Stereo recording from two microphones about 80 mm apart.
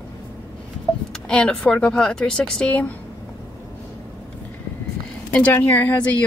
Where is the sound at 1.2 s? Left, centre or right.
Centre.